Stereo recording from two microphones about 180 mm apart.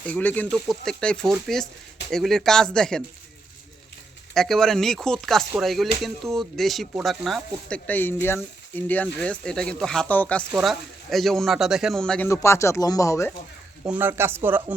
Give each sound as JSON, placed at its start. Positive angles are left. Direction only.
{"t": 0.0, "sound": "speech", "side_deg": 10}
{"t": 4.4, "sound": "speech", "side_deg": 0}
{"t": 12.3, "sound": "speech", "side_deg": 15}
{"t": 13.8, "sound": "speech", "side_deg": -10}